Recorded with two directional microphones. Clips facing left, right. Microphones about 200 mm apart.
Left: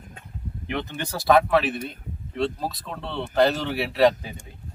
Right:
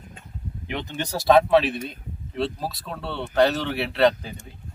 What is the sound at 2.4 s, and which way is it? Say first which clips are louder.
Speech: left 1 dB; 5° right (ahead or behind).